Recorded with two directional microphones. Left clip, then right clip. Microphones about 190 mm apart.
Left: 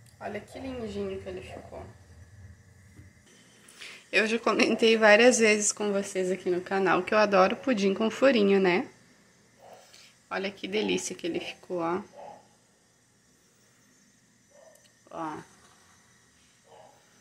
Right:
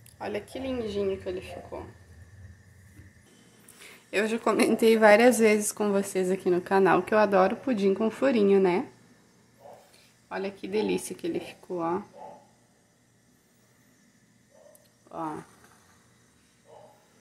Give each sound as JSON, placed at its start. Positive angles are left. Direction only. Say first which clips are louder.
{"t": 0.2, "sound": "a woman's voice", "louder": "right 4 dB", "side_deg": -45}
{"t": 3.8, "sound": "a woman's voice", "louder": "left 2 dB", "side_deg": -5}
{"t": 9.9, "sound": "speech", "louder": "left 1 dB", "side_deg": -5}
{"t": 15.0, "sound": "speech", "louder": "right 1 dB", "side_deg": -10}